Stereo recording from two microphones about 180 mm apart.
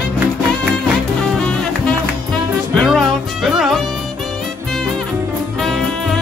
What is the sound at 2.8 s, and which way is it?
Music, centre (ahead or behind).